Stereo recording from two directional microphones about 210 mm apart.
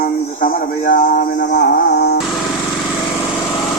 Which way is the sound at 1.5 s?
50° left (ahead or behind).